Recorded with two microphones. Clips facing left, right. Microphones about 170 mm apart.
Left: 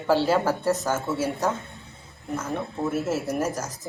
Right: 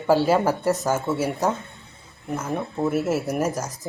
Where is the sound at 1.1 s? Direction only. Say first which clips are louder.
Right 2 dB; 15° right (ahead or behind).